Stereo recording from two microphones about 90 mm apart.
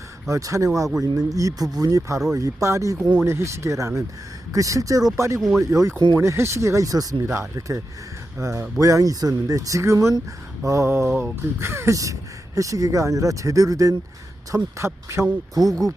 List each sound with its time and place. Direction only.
0.3 s speech: 35° right (ahead or behind)
15.6 s speech: 45° right (ahead or behind)